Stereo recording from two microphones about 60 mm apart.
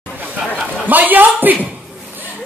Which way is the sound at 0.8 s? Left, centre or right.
Right.